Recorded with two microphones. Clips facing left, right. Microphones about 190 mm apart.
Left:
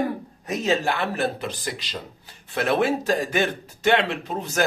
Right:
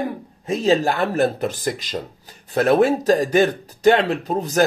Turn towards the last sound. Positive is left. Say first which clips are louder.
# right 6 dB
turn(degrees=-35)  # may be behind; listen again after turning